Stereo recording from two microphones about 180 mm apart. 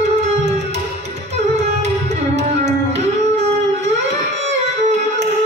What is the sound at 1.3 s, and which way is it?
Music, 35° right (ahead or behind).